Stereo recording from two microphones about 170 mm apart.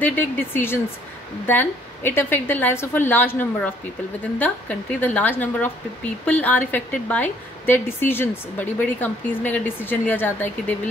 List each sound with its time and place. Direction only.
0.0 s speech: 10° left (ahead or behind)